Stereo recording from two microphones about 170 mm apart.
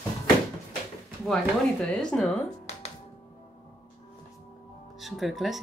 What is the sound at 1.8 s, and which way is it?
Speech, 5° left (ahead or behind).